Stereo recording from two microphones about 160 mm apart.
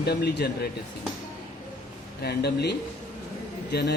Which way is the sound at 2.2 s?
90° left.